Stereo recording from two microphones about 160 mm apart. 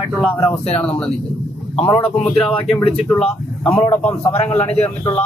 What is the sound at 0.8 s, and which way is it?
A woman's voice, 5° left (ahead or behind).